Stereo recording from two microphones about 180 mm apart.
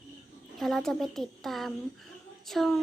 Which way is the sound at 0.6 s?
Centre (ahead or behind).